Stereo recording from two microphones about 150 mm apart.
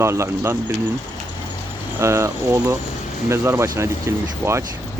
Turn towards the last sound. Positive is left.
turn(degrees=-20)  # may be behind; listen again after turning